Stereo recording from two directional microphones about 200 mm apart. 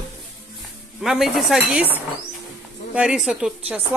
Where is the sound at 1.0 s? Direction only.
Centre (ahead or behind).